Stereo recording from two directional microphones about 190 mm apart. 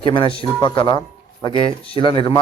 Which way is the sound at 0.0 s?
25° left (ahead or behind).